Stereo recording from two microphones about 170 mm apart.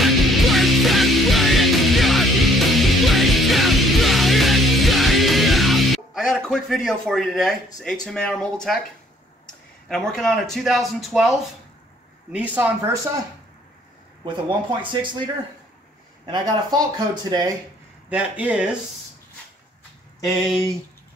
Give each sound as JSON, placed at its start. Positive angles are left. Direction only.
{"t": 0.0, "sound": "music", "side_deg": 0}
{"t": 9.8, "sound": "speech", "side_deg": 5}
{"t": 14.2, "sound": "speech", "side_deg": -30}
{"t": 16.3, "sound": "speech", "side_deg": -25}
{"t": 18.1, "sound": "speech", "side_deg": -10}